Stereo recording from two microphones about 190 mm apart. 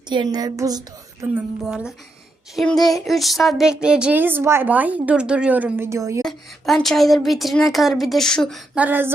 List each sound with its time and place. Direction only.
0.1 s a woman's voice: 20° right (ahead or behind)
1.3 s a woman's voice: 5° right (ahead or behind)
6.2 s a woman's voice: centre (ahead or behind)